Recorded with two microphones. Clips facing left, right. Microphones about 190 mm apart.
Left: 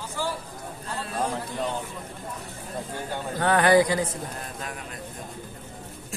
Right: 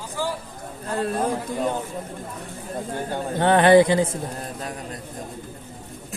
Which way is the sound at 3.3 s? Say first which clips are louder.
Right 5 dB; 25° right (ahead or behind).